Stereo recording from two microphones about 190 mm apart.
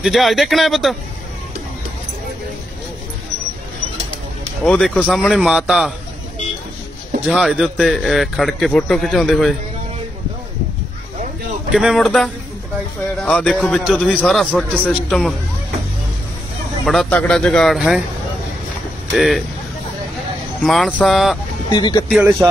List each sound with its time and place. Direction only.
0.0 s a man's voice: centre (ahead or behind)
4.6 s a man's voice: 5° left (ahead or behind)
7.2 s a man's voice: centre (ahead or behind)
11.7 s a man's voice: centre (ahead or behind)
16.8 s a man's voice: centre (ahead or behind)
19.1 s a man's voice: centre (ahead or behind)
20.6 s a man's voice: centre (ahead or behind)
21.6 s speech: 25° left (ahead or behind)
22.1 s speech: 10° right (ahead or behind)